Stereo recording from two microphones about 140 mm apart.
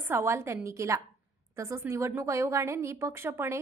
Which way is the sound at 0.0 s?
15° right (ahead or behind).